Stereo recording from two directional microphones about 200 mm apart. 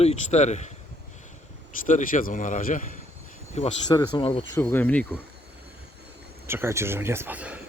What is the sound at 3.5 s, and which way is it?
Speech, 25° left (ahead or behind).